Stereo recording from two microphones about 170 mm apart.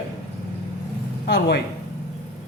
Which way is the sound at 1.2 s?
75° left (ahead or behind).